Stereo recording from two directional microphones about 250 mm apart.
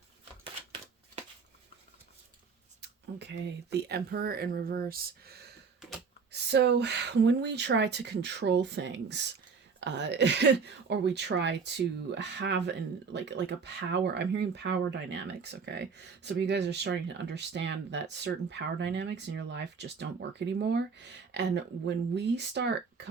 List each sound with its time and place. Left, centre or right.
0.4 s scissors: right
2.8 s speech: right